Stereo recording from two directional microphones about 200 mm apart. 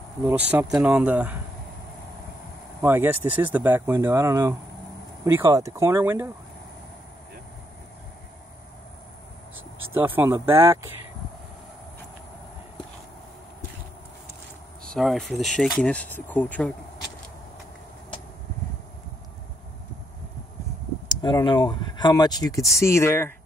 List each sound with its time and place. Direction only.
0.2 s speech: 10° right (ahead or behind)
2.8 s speech: 10° right (ahead or behind)
9.9 s speech: 10° right (ahead or behind)
14.9 s speech: centre (ahead or behind)
21.2 s speech: 20° left (ahead or behind)